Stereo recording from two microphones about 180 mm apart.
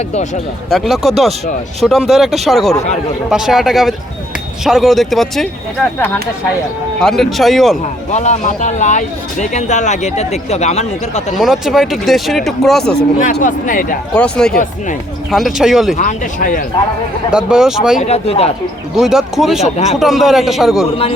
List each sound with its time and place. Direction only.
0.7 s speech: centre (ahead or behind)
7.0 s speech: centre (ahead or behind)
8.1 s speech: 40° left (ahead or behind)
11.3 s speech: centre (ahead or behind)
13.4 s speech: 50° left (ahead or behind)
14.1 s speech: 5° left (ahead or behind)
16.0 s speech: 45° left (ahead or behind)
17.3 s speech: 5° right (ahead or behind)
18.0 s speech: 35° left (ahead or behind)
18.9 s speech: centre (ahead or behind)
19.6 s speech: 35° left (ahead or behind)
20.0 s speech: centre (ahead or behind)